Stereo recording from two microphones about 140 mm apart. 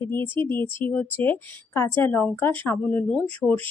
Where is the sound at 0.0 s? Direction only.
15° left (ahead or behind).